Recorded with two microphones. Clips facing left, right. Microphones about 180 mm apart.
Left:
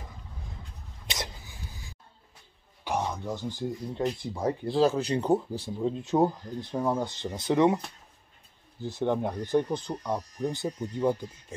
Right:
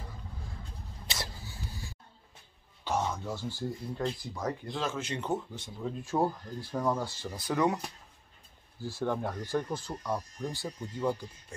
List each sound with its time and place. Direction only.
1.1 s a sound: 20° left (ahead or behind)
2.8 s speech: 15° left (ahead or behind)
8.8 s speech: 20° left (ahead or behind)